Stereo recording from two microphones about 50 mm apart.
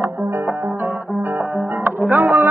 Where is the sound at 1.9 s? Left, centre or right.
Right.